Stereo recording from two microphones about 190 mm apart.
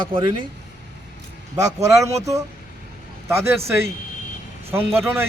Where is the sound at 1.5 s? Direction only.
20° right (ahead or behind).